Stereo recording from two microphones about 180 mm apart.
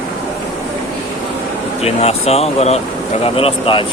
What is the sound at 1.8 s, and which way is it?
Speech, 35° left (ahead or behind).